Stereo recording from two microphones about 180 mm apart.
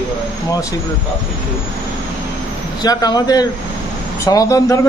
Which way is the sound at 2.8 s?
20° left (ahead or behind).